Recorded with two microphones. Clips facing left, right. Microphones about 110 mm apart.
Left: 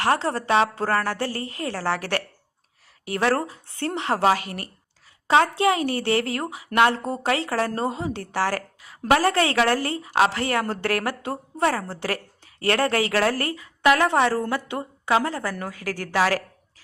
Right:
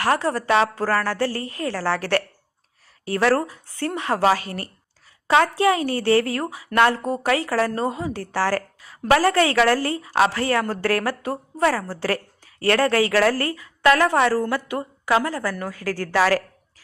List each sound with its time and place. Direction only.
0.0 s a woman's voice: 25° left (ahead or behind)
4.4 s speech: 35° right (ahead or behind)
5.3 s a woman's voice: 25° left (ahead or behind)